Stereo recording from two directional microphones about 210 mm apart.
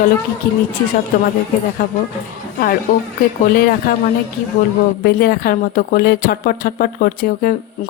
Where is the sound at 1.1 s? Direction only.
40° left (ahead or behind).